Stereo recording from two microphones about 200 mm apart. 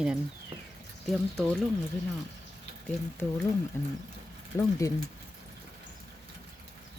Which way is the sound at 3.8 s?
10° left (ahead or behind).